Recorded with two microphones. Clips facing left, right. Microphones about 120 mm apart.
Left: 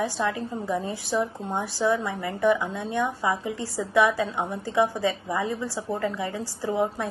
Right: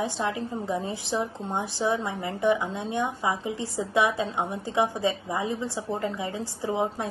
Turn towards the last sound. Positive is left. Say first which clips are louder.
# left 2 dB
turn(degrees=-20)  # may be behind; listen again after turning